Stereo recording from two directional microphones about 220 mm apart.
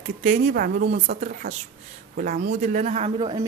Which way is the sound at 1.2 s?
35° right (ahead or behind).